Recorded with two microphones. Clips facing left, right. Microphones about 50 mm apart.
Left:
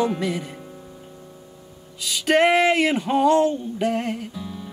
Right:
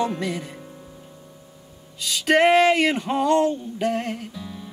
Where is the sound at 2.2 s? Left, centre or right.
Centre.